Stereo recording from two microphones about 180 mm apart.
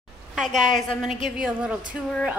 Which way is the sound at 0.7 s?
Centre (ahead or behind).